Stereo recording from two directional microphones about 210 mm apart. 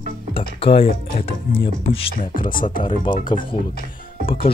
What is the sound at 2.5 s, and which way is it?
Speech, 40° left (ahead or behind).